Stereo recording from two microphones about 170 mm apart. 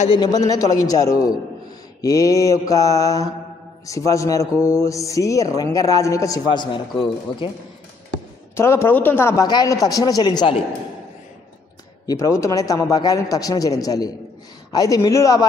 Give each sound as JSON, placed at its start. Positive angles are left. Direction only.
{"t": 0.5, "sound": "a man's voice", "side_deg": 20}
{"t": 8.5, "sound": "a man's voice", "side_deg": 15}
{"t": 12.1, "sound": "a man's voice", "side_deg": 20}